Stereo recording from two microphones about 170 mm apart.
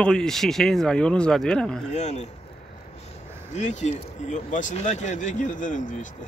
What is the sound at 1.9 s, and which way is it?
Speech, 40° left (ahead or behind).